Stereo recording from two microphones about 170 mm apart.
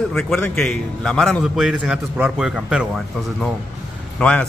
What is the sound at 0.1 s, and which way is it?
A man's voice, centre (ahead or behind).